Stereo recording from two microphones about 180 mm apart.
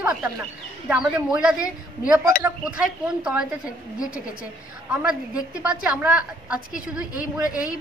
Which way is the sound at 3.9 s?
50° left (ahead or behind).